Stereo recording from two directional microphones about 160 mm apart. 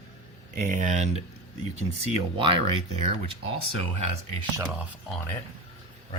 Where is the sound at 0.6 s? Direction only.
50° right (ahead or behind).